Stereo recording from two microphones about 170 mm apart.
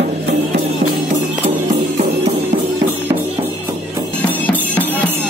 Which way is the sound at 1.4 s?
45° right (ahead or behind).